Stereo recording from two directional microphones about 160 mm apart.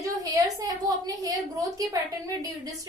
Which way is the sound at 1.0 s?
20° right (ahead or behind).